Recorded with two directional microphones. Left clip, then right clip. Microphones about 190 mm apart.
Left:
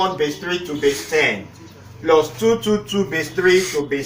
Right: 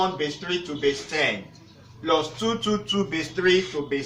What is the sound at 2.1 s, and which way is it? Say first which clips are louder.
Speech: left 8 dB; 20° right (ahead or behind).